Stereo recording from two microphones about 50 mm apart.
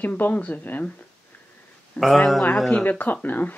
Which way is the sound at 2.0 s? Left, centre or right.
Left.